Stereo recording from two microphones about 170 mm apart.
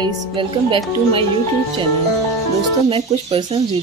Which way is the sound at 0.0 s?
30° right (ahead or behind).